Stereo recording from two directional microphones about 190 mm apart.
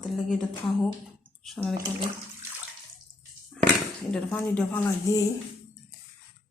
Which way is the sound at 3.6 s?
5° left (ahead or behind).